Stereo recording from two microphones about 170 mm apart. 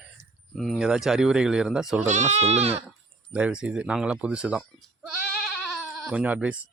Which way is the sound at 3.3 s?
5° right (ahead or behind).